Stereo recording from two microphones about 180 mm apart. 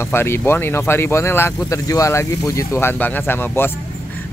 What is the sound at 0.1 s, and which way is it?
Speech, 15° left (ahead or behind).